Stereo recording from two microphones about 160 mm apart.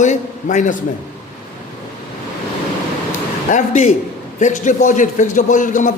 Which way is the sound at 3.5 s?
50° left (ahead or behind).